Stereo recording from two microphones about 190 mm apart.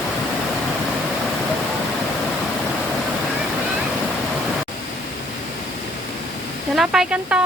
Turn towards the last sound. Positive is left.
turn(degrees=-5)  # may be behind; listen again after turning